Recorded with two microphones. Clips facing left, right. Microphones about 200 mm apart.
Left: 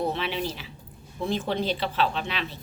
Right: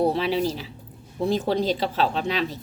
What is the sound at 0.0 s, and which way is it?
Speech, 35° right (ahead or behind).